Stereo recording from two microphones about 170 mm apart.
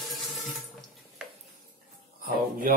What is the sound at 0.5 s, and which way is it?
Water, centre (ahead or behind).